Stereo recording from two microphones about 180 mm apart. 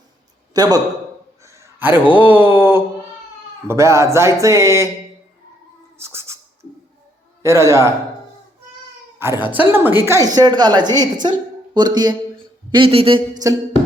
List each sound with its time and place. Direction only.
0.5 s a man's voice: 20° right (ahead or behind)
1.5 s a sound: 15° right (ahead or behind)
3.7 s speech: 15° right (ahead or behind)
6.0 s a sound: 15° right (ahead or behind)
7.4 s speech: 15° right (ahead or behind)
9.1 s a woman's voice: 15° right (ahead or behind)